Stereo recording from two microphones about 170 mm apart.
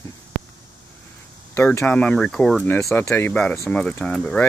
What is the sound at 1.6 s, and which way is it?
Speech, 10° left (ahead or behind).